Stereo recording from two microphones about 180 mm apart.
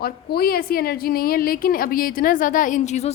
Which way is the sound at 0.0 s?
55° left (ahead or behind).